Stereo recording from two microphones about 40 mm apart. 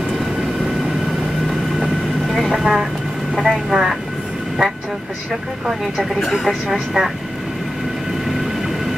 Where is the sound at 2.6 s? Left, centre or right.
Centre.